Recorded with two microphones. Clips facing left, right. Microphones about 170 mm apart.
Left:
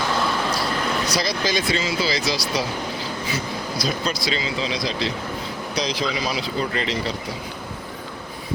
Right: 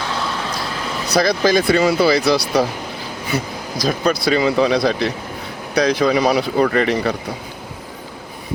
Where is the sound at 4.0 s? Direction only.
55° right (ahead or behind).